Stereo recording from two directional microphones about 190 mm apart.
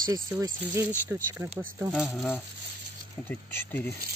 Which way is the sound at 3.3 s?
10° left (ahead or behind).